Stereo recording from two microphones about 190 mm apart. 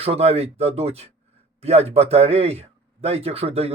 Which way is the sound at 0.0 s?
30° right (ahead or behind).